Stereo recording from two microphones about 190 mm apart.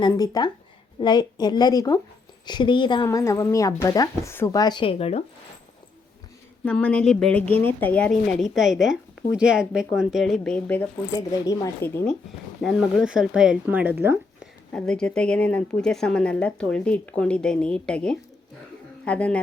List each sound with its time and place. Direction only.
0.0 s a woman's voice: 20° left (ahead or behind)
6.7 s a woman's voice: 5° left (ahead or behind)
12.6 s a woman's voice: centre (ahead or behind)
14.7 s a woman's voice: 5° left (ahead or behind)